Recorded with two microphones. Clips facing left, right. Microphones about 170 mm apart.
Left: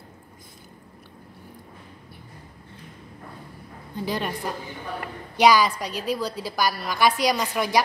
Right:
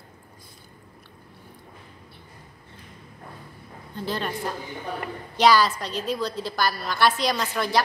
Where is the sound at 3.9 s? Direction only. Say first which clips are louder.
Left 1 dB; 15° left (ahead or behind).